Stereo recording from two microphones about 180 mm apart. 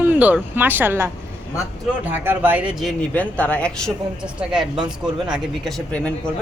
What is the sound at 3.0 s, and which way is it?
Speech, 10° left (ahead or behind).